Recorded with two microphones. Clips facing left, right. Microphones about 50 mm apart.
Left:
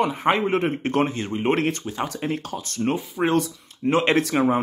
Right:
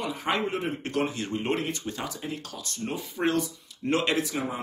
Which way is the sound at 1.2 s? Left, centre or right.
Left.